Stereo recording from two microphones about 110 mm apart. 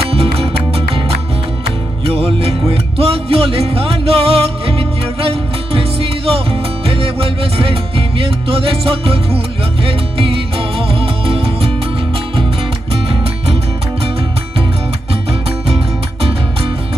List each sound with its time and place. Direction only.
0.1 s music: 60° right (ahead or behind)
12.9 s music: 60° right (ahead or behind)
15.7 s music: 65° right (ahead or behind)